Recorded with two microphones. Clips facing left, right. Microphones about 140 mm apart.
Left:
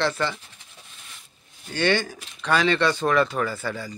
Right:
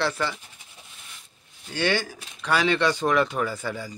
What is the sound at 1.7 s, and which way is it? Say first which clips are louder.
A man's voice: left 2 dB; 10° right (ahead or behind).